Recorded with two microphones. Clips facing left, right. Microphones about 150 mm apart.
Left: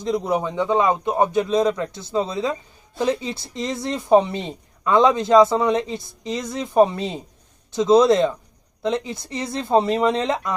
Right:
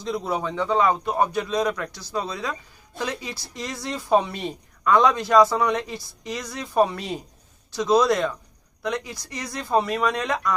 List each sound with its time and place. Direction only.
0.0 s speech: 20° left (ahead or behind)